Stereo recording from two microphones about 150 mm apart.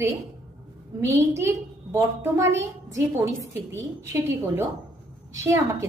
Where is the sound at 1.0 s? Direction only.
20° right (ahead or behind).